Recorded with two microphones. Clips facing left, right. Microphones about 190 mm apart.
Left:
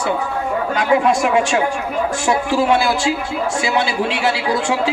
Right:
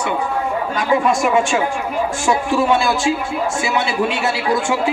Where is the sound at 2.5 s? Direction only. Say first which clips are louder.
Left 1 dB; 30° left (ahead or behind).